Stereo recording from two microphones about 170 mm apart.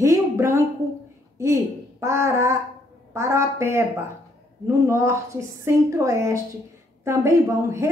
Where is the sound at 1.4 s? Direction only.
15° right (ahead or behind).